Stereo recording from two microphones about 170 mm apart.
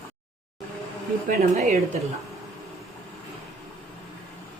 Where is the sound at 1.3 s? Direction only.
45° right (ahead or behind).